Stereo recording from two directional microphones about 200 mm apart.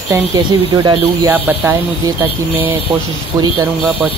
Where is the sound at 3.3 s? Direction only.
15° right (ahead or behind).